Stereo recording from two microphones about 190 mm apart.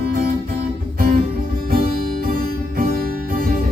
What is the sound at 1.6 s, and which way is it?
Music, 50° right (ahead or behind).